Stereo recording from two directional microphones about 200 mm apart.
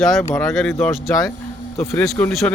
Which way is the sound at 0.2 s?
10° left (ahead or behind).